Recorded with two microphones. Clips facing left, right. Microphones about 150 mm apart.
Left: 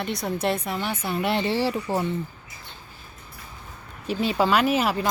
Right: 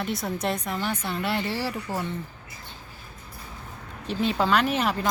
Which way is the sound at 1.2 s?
20° left (ahead or behind).